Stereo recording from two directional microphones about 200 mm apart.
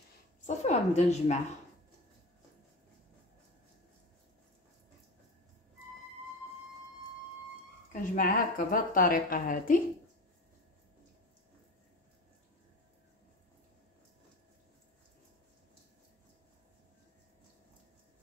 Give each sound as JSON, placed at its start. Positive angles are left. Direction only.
{"t": 0.6, "sound": "a woman's voice", "side_deg": 35}
{"t": 7.9, "sound": "a woman's voice", "side_deg": 45}